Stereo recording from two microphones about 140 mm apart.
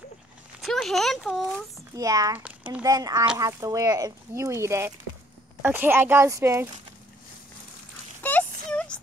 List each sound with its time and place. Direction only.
0.6 s speech: centre (ahead or behind)
2.0 s speech: 25° right (ahead or behind)
2.3 s a child's voice: 10° right (ahead or behind)
2.8 s speech: 25° right (ahead or behind)
8.2 s a sound: 10° left (ahead or behind)